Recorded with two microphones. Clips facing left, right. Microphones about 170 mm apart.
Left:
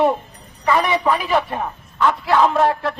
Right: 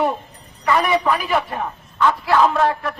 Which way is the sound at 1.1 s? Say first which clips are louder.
Left 1 dB; centre (ahead or behind).